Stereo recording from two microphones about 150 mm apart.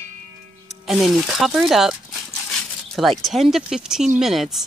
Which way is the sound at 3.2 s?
Centre (ahead or behind).